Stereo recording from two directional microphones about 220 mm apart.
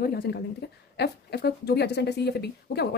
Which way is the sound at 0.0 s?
45° left (ahead or behind).